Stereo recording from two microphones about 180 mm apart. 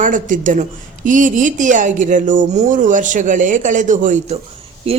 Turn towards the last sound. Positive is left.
turn(degrees=-30)  # may be behind; listen again after turning